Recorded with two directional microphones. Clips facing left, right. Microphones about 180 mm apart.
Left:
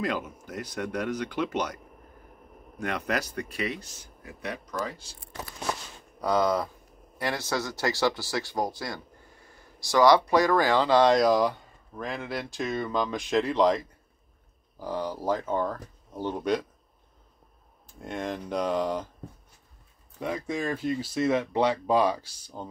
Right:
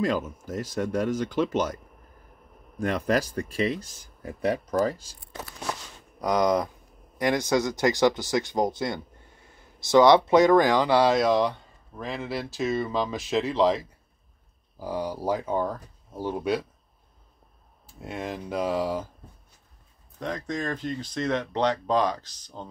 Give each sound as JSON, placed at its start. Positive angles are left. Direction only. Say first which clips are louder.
{"t": 0.5, "sound": "speech", "louder": "right 5 dB", "side_deg": -30}
{"t": 3.1, "sound": "speech", "louder": "right 5 dB", "side_deg": -30}
{"t": 6.2, "sound": "speech", "louder": "right 2 dB", "side_deg": -15}
{"t": 17.8, "sound": "speech", "louder": "left 1 dB", "side_deg": -5}
{"t": 20.2, "sound": "speech", "louder": "even", "side_deg": 10}